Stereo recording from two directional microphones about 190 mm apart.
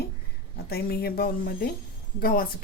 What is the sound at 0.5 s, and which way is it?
A woman's voice, 55° left (ahead or behind).